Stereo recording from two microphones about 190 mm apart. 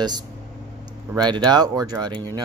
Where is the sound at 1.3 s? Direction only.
20° right (ahead or behind).